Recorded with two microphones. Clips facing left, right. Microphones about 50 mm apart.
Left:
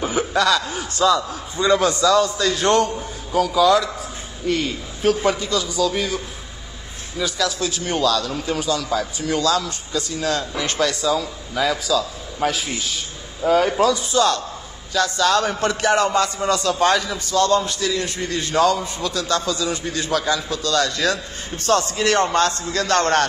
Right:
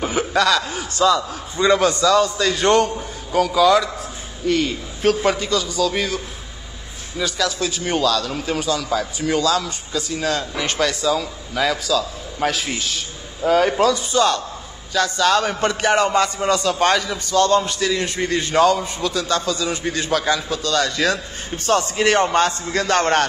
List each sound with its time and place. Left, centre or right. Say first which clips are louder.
0.0 s a man's voice: right 1 dB; centre
17.9 s a man's voice: right 3 dB; centre